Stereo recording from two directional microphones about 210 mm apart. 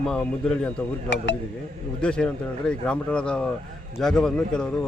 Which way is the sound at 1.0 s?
60° left (ahead or behind).